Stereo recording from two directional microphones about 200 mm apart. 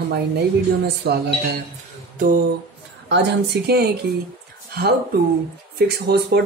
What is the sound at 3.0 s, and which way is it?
Speech, 60° right (ahead or behind).